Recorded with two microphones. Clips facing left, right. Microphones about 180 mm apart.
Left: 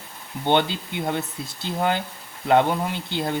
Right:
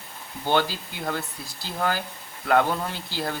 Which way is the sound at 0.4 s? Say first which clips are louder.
Left 3 dB; 25° left (ahead or behind).